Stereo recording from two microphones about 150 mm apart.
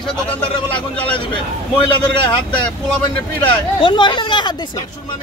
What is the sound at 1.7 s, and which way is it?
Speech, 30° left (ahead or behind).